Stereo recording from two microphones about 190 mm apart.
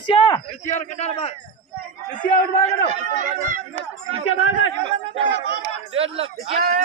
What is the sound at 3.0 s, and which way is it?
Speech, 45° right (ahead or behind).